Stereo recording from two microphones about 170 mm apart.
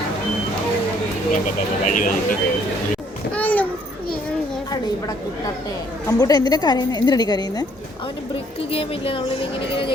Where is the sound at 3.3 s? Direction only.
10° left (ahead or behind).